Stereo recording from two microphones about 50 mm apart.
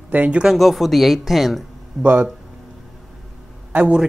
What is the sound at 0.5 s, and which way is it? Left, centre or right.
A woman's voice, centre.